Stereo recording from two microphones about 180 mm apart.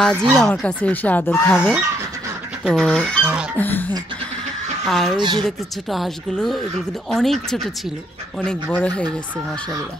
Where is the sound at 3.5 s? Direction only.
10° left (ahead or behind).